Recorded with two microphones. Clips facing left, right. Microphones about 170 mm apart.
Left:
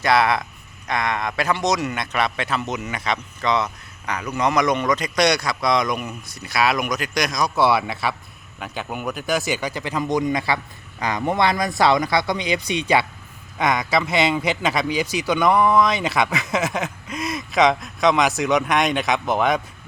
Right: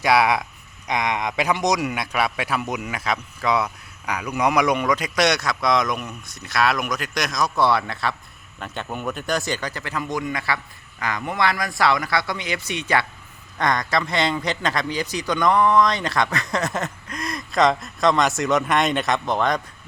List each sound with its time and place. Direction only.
0.0 s a man's voice: 10° right (ahead or behind); by 19.6 s 5° left (ahead or behind)